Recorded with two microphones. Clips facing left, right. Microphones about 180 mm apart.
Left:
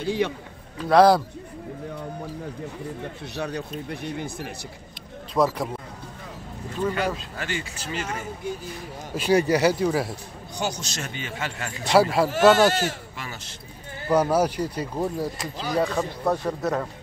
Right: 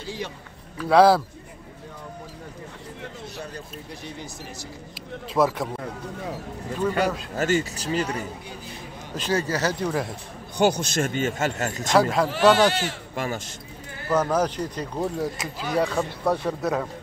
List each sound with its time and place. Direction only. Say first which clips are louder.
0.0 s a man's voice: left 9 dB; 60° left (ahead or behind)
0.8 s speech: even; 5° right (ahead or behind)
3.3 s speech: left 6 dB; 70° left (ahead or behind)
5.3 s speech: even; centre (ahead or behind)
7.3 s speech: right 8 dB; 45° right (ahead or behind)
9.1 s speech: left 5 dB; 15° left (ahead or behind)
10.6 s speech: right 9 dB; 55° right (ahead or behind)
11.9 s speech: left 2 dB; 5° left (ahead or behind)
12.3 s speech: left 1 dB; 45° left (ahead or behind)
13.1 s a man's voice: right 9 dB; 50° right (ahead or behind)
14.0 s speech: left 2 dB; 10° left (ahead or behind)